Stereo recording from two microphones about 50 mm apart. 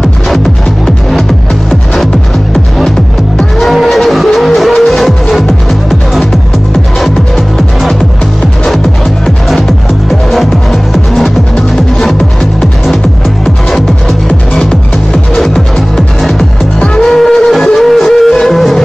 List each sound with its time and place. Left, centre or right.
3.5 s music: centre
10.3 s music: centre
14.5 s music: centre